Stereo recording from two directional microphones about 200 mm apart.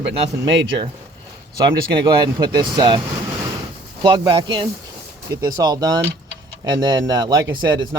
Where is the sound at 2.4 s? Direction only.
20° right (ahead or behind).